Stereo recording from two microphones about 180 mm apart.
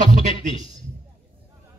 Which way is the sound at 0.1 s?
40° right (ahead or behind).